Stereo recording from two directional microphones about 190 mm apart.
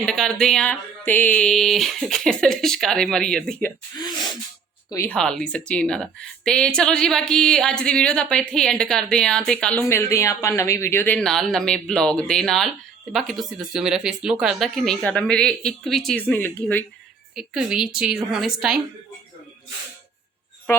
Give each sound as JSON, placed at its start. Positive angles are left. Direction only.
{"t": 0.0, "sound": "a woman's voice", "side_deg": 5}
{"t": 3.9, "sound": "a sound", "side_deg": 20}
{"t": 4.9, "sound": "speech", "side_deg": 15}
{"t": 5.1, "sound": "a woman's voice", "side_deg": 5}
{"t": 17.3, "sound": "a woman's voice", "side_deg": -5}